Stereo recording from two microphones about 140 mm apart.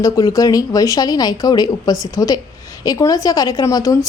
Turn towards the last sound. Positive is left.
turn(degrees=25)  # may be behind; listen again after turning